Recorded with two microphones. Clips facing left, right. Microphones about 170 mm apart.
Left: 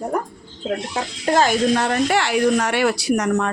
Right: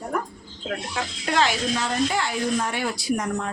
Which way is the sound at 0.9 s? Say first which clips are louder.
Left 5 dB; 40° left (ahead or behind).